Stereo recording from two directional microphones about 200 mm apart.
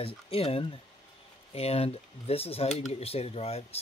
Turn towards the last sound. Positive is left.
turn(degrees=30)  # may be behind; listen again after turning